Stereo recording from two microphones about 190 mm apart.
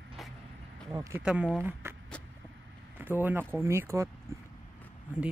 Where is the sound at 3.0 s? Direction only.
10° right (ahead or behind).